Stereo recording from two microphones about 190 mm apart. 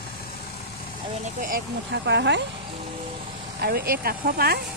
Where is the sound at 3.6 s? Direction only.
55° right (ahead or behind).